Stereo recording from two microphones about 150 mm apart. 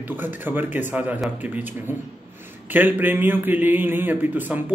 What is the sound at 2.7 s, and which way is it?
Speech, 10° right (ahead or behind).